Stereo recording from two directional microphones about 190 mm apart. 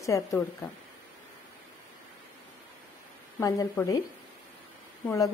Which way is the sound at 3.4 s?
20° left (ahead or behind).